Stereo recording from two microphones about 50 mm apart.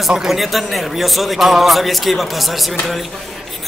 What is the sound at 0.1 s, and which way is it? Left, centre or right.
Speech, centre.